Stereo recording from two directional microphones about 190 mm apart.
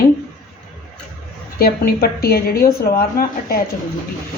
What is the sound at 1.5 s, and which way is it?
A woman's voice, 55° left (ahead or behind).